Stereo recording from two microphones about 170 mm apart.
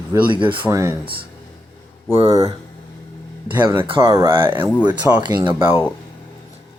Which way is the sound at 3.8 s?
30° right (ahead or behind).